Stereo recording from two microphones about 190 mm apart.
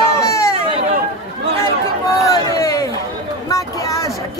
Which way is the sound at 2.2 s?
15° left (ahead or behind).